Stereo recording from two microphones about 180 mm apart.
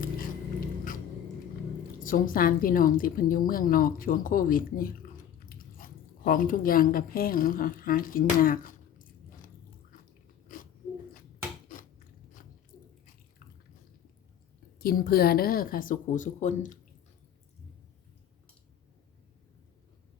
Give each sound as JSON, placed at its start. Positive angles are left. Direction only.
{"t": 2.0, "sound": "a woman's voice", "side_deg": 50}
{"t": 12.4, "sound": "biting", "side_deg": 50}
{"t": 14.8, "sound": "a woman's voice", "side_deg": 55}